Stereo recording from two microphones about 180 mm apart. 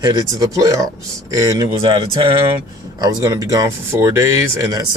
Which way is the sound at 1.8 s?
30° right (ahead or behind).